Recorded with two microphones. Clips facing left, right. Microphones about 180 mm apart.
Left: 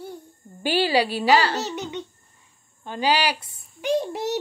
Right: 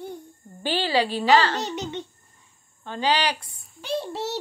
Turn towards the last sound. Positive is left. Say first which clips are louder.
# left 5 dB
turn(degrees=15)  # may be behind; listen again after turning